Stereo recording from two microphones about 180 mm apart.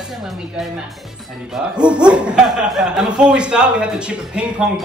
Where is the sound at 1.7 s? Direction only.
5° right (ahead or behind).